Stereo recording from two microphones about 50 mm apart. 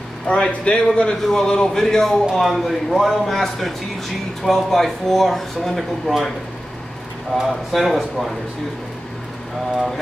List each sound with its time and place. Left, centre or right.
0.3 s a man's voice: left
1.2 s speech: centre
7.3 s speech: centre